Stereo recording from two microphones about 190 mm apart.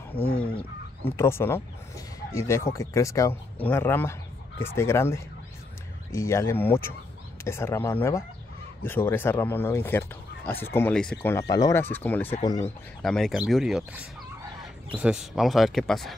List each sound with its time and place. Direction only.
0.4 s speech: 30° left (ahead or behind)
1.1 s speech: 15° left (ahead or behind)
11.3 s speech: 20° left (ahead or behind)
12.4 s speech: 20° left (ahead or behind)
13.0 s speech: centre (ahead or behind)